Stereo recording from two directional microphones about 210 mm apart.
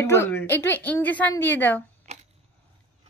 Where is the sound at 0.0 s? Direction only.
10° left (ahead or behind).